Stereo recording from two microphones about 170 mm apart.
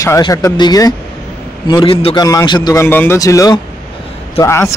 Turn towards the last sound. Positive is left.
turn(degrees=15)  # may be behind; listen again after turning